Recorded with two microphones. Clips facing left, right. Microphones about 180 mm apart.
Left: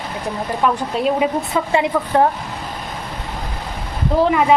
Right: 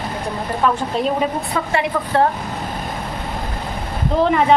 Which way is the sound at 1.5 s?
15° left (ahead or behind).